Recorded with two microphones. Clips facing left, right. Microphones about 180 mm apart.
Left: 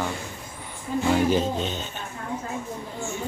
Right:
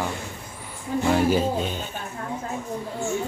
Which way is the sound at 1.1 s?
10° right (ahead or behind).